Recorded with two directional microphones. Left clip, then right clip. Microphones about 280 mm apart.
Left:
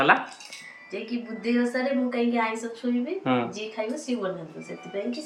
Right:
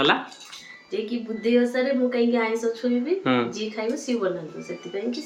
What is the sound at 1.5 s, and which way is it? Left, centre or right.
A woman's voice, centre.